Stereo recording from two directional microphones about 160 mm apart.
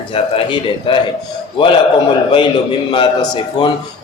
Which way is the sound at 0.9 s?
30° left (ahead or behind).